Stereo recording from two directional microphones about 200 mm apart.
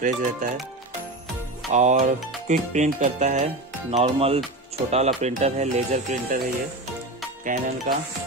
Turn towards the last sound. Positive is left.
turn(degrees=-40)  # may be behind; listen again after turning